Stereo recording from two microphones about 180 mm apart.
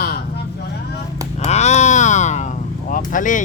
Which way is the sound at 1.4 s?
40° left (ahead or behind).